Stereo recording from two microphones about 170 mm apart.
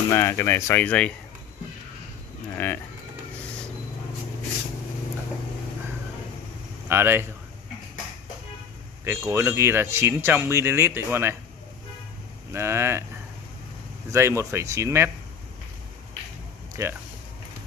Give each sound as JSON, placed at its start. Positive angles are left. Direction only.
{"t": 0.1, "sound": "speech", "side_deg": 15}
{"t": 2.5, "sound": "speech", "side_deg": 10}
{"t": 6.9, "sound": "speech", "side_deg": -15}
{"t": 9.3, "sound": "speech", "side_deg": -15}
{"t": 12.5, "sound": "speech", "side_deg": -15}
{"t": 14.1, "sound": "speech", "side_deg": -15}
{"t": 16.8, "sound": "speech", "side_deg": -15}